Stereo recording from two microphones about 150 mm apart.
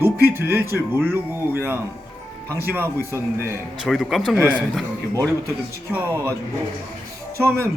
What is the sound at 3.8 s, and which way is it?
Speech, centre (ahead or behind).